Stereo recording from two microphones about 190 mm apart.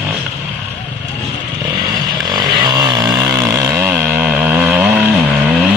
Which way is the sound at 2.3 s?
20° right (ahead or behind).